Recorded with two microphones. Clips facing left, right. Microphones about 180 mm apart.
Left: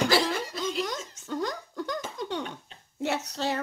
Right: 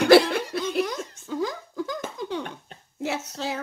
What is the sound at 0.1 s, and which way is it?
Snicker, 65° right (ahead or behind).